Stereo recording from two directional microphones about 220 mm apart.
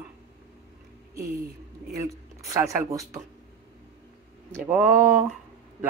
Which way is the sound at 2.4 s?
15° right (ahead or behind).